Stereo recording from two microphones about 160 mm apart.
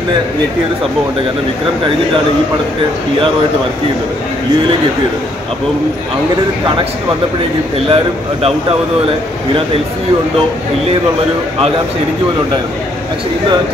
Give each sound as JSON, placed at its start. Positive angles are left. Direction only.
{"t": 7.9, "sound": "speech", "side_deg": -35}